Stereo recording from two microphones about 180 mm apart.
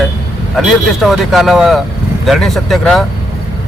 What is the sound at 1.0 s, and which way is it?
A man's voice, centre (ahead or behind).